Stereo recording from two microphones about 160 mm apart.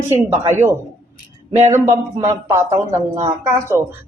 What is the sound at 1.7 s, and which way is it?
A woman's voice, 20° right (ahead or behind).